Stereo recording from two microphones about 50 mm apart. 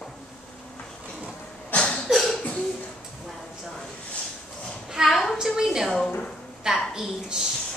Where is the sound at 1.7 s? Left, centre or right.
Left.